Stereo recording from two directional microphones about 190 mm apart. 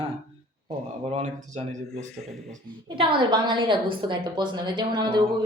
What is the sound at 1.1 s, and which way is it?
A woman's voice, 35° right (ahead or behind).